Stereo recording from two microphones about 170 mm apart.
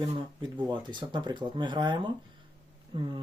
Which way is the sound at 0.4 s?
25° right (ahead or behind).